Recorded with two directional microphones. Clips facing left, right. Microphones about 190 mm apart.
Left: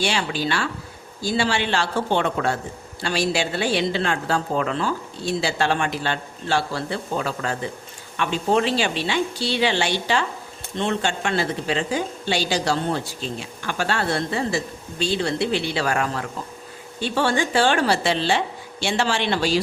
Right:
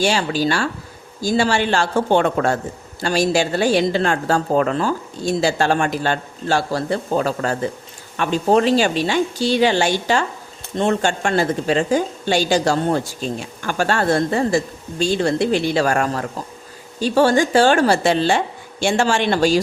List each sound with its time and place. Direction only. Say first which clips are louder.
0.0 s a woman's voice: right 5 dB; 40° right (ahead or behind)